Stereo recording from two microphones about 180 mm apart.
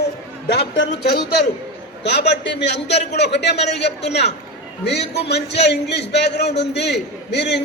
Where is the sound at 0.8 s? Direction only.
65° left (ahead or behind).